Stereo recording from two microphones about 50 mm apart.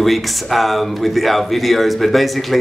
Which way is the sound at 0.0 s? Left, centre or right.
Centre.